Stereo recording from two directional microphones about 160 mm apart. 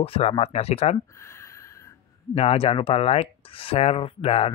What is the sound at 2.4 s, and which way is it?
A man's voice, 40° left (ahead or behind).